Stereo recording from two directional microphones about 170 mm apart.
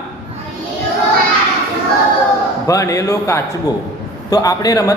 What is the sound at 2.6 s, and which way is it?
A man's voice, 20° left (ahead or behind).